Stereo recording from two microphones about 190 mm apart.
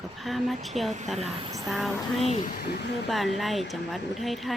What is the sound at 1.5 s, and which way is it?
Speech, 20° right (ahead or behind).